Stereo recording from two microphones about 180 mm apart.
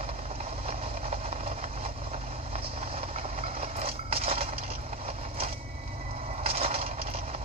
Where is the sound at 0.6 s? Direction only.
35° right (ahead or behind).